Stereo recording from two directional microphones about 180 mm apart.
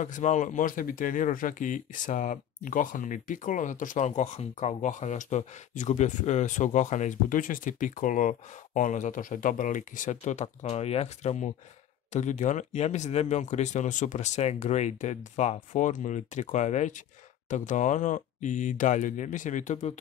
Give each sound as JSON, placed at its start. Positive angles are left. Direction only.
{"t": 0.0, "sound": "speech", "side_deg": 45}